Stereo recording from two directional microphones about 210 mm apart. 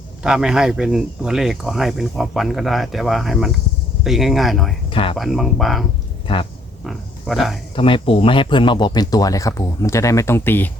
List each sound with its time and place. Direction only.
0.2 s speech: 5° right (ahead or behind)
4.9 s speech: 25° left (ahead or behind)
5.1 s speech: centre (ahead or behind)
6.2 s speech: 25° left (ahead or behind)
6.8 s speech: centre (ahead or behind)
7.8 s speech: 25° left (ahead or behind); by 10.7 s 10° left (ahead or behind)